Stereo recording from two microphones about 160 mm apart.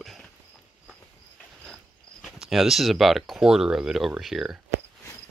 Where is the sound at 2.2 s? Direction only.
Centre (ahead or behind).